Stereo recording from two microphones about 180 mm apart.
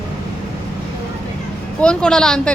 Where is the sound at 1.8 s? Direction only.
5° left (ahead or behind).